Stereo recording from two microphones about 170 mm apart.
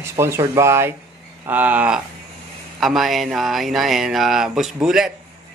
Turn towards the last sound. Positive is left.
turn(degrees=-5)  # may be behind; listen again after turning